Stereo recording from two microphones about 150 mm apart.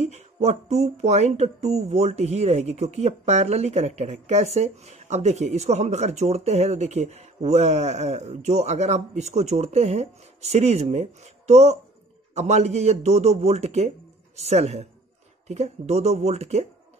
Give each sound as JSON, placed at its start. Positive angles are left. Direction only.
{"t": 0.0, "sound": "speech", "side_deg": -45}